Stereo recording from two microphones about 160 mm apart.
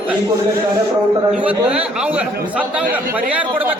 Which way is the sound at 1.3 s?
10° right (ahead or behind).